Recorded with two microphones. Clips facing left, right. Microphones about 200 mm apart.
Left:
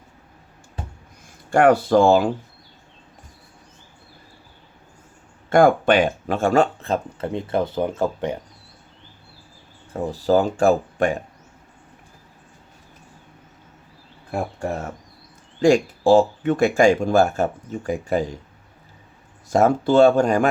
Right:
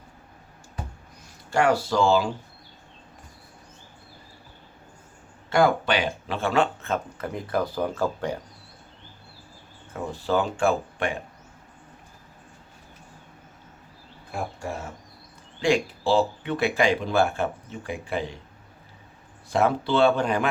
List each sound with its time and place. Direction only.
1.5 s speech: 55° left (ahead or behind)
5.5 s speech: 50° left (ahead or behind); by 8.4 s 20° left (ahead or behind)
9.9 s speech: 35° left (ahead or behind)
15.6 s speech: 45° left (ahead or behind)
19.5 s speech: 45° left (ahead or behind)